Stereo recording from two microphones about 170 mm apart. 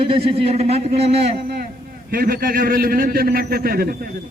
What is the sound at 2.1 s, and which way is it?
A man's voice, 60° right (ahead or behind).